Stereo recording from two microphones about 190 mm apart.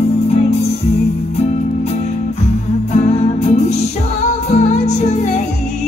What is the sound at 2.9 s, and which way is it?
Music, 40° left (ahead or behind).